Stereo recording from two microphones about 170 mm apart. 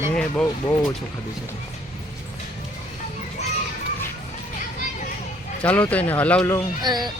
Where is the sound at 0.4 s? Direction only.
20° left (ahead or behind).